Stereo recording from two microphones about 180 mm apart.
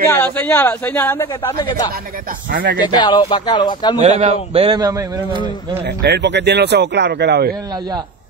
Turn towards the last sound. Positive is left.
turn(degrees=-65)  # may be behind; listen again after turning